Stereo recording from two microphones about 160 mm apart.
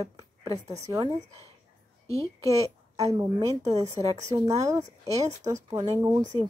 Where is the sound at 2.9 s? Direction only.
20° right (ahead or behind).